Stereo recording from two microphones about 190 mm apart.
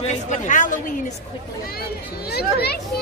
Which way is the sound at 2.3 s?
55° left (ahead or behind).